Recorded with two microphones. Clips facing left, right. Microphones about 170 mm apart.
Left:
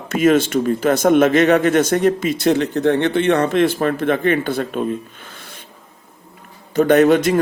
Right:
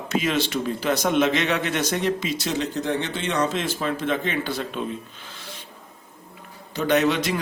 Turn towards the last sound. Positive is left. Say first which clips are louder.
# left 8 dB
turn(degrees=50)  # may be behind; listen again after turning